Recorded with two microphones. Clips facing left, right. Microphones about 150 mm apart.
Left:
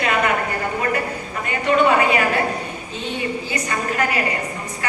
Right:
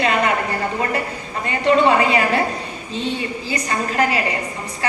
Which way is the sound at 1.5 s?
30° right (ahead or behind).